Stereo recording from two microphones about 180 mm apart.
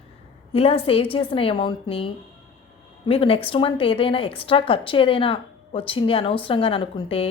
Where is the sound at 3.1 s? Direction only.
30° left (ahead or behind).